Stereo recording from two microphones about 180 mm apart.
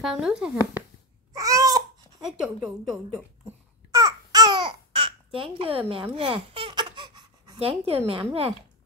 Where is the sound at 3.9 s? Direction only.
20° right (ahead or behind).